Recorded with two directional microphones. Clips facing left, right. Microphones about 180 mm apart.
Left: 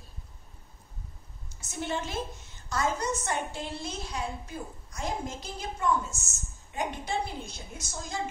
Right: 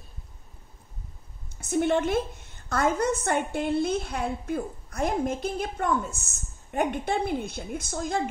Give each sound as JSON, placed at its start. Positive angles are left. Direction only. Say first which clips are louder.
{"t": 1.6, "sound": "a woman's voice", "louder": "right 10 dB", "side_deg": -60}